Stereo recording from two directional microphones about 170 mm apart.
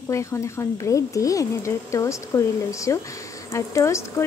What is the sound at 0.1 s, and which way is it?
Speech, 15° left (ahead or behind).